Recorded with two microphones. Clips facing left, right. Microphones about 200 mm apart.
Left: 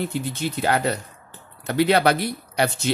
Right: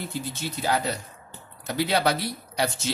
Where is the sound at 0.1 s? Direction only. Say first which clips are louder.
Left 5 dB; 60° left (ahead or behind).